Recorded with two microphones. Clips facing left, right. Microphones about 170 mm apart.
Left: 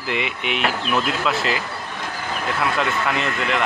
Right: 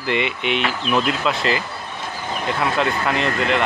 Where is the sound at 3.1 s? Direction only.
35° right (ahead or behind).